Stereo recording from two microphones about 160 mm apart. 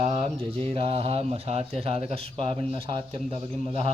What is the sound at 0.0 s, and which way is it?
Speech, 40° right (ahead or behind).